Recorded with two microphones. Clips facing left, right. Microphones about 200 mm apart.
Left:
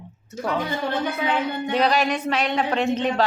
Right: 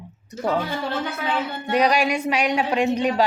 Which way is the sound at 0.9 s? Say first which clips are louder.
Left 2 dB; 15° left (ahead or behind).